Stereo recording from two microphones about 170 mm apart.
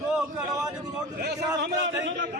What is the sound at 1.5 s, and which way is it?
Speech, 90° right.